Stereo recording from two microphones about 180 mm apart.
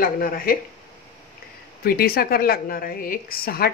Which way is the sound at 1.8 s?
55° left (ahead or behind).